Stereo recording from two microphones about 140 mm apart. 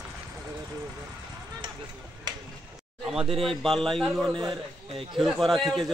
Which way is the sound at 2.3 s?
30° right (ahead or behind).